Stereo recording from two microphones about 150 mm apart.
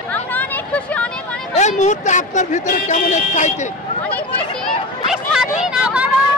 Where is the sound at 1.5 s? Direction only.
50° left (ahead or behind).